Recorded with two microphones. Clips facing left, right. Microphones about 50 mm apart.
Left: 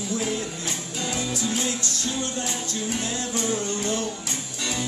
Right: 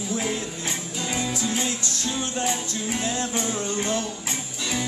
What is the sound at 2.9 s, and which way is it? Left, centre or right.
Music, right.